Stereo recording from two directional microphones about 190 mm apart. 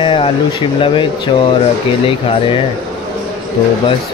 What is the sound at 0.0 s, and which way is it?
Speech, 30° left (ahead or behind).